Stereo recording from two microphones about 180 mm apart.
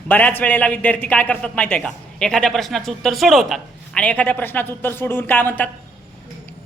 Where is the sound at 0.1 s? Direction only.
10° left (ahead or behind).